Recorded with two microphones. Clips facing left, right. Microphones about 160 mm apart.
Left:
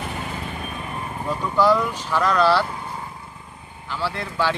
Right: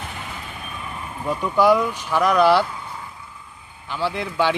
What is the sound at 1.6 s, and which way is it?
Speech, 15° right (ahead or behind).